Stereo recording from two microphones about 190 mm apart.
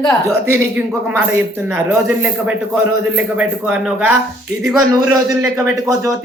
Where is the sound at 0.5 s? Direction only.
5° right (ahead or behind).